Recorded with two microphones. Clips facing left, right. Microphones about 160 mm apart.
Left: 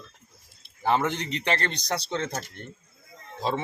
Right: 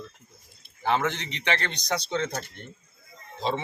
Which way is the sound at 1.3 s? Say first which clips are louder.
Left 2 dB; 40° left (ahead or behind).